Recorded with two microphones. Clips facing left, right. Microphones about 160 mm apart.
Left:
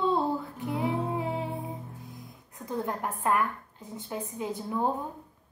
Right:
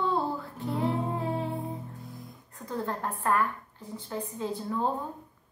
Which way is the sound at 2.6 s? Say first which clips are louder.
Left 1 dB; 15° left (ahead or behind).